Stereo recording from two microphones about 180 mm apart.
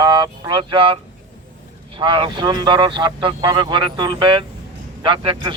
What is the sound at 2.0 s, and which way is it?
Speech, 25° right (ahead or behind).